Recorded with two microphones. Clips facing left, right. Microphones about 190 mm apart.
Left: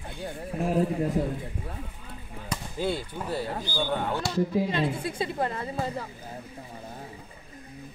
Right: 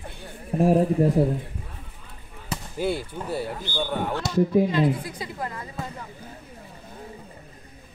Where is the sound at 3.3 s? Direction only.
10° right (ahead or behind).